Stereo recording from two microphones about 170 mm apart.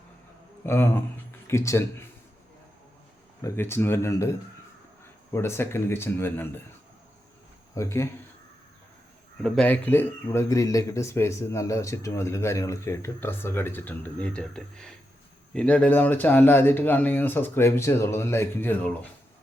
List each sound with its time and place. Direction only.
0.6 s speech: 15° left (ahead or behind)
3.4 s speech: 15° left (ahead or behind)
7.8 s speech: 15° left (ahead or behind)
9.4 s speech: 5° left (ahead or behind)